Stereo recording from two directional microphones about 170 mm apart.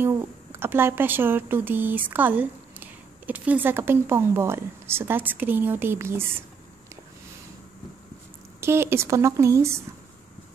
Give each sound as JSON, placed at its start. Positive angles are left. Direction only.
{"t": 0.0, "sound": "a woman's voice", "side_deg": -15}
{"t": 8.5, "sound": "a woman's voice", "side_deg": -15}